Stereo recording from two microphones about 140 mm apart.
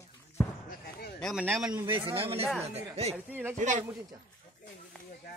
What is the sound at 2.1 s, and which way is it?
Speech, 40° right (ahead or behind).